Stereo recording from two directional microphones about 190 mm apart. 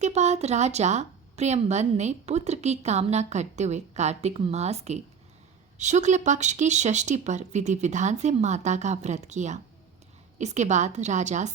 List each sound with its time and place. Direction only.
0.0 s a woman's voice: 35° right (ahead or behind)